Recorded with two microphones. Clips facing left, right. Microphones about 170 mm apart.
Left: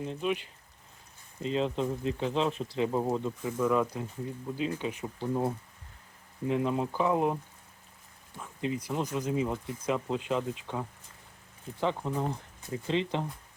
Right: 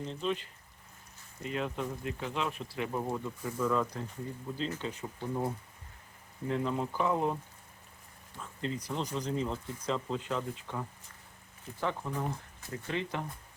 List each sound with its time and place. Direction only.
0.0 s speech: 10° left (ahead or behind)
1.4 s speech: 25° left (ahead or behind)
3.6 s speech: 10° left (ahead or behind)
6.5 s speech: 15° left (ahead or behind)
8.4 s speech: 10° left (ahead or behind)